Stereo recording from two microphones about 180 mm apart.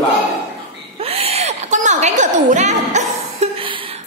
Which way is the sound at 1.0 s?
35° right (ahead or behind).